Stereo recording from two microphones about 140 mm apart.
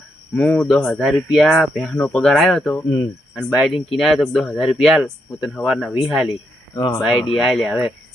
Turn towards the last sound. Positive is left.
turn(degrees=0)  # may be behind; listen again after turning